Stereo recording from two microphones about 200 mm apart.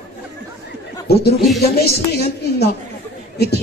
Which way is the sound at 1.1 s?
55° left (ahead or behind).